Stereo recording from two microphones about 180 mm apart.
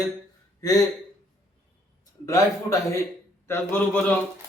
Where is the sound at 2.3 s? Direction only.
15° left (ahead or behind).